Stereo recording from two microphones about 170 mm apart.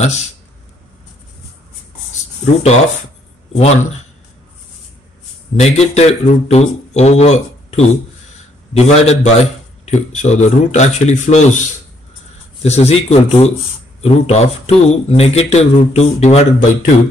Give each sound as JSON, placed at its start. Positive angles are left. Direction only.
{"t": 2.4, "sound": "a man's voice", "side_deg": 40}
{"t": 5.6, "sound": "a man's voice", "side_deg": 40}